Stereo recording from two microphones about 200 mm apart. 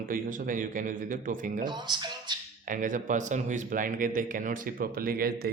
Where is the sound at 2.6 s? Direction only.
40° right (ahead or behind).